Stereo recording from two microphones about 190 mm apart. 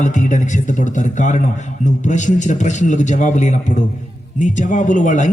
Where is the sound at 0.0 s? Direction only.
40° left (ahead or behind).